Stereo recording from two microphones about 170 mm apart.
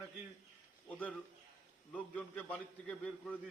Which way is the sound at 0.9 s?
10° left (ahead or behind).